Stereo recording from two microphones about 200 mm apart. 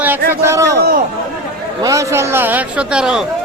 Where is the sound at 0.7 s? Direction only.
50° right (ahead or behind).